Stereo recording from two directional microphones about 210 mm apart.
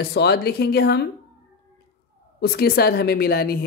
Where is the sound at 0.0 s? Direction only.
50° left (ahead or behind).